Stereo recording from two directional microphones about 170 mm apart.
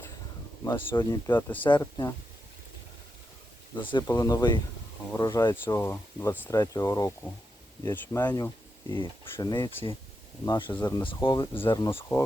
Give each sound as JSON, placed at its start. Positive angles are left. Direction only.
{"t": 0.6, "sound": "speech", "side_deg": 15}
{"t": 4.0, "sound": "speech", "side_deg": 20}
{"t": 11.7, "sound": "speech", "side_deg": 20}